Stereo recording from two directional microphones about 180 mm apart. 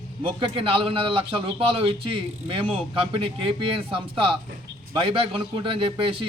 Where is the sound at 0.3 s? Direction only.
30° right (ahead or behind).